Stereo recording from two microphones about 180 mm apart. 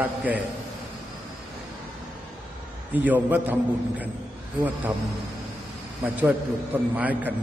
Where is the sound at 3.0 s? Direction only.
10° right (ahead or behind).